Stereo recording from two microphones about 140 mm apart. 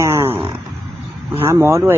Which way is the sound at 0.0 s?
15° right (ahead or behind).